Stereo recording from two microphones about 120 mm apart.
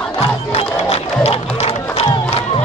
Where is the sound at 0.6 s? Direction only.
55° left (ahead or behind).